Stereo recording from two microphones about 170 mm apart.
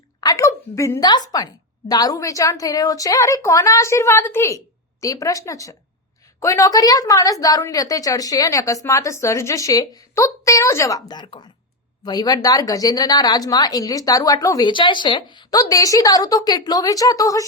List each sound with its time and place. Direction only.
0.2 s a woman's voice: 20° left (ahead or behind)